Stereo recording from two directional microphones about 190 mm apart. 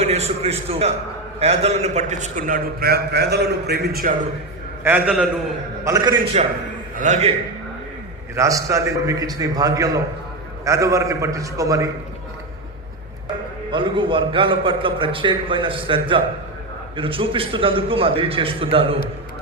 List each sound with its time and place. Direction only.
0.0 s a man's voice: 35° right (ahead or behind); by 4.1 s 55° right (ahead or behind)
4.8 s a man's voice: 10° right (ahead or behind)
5.8 s a man's voice: 20° right (ahead or behind)
6.3 s a man's voice: 35° right (ahead or behind)
8.4 s a man's voice: 15° right (ahead or behind)
13.7 s a man's voice: 25° right (ahead or behind)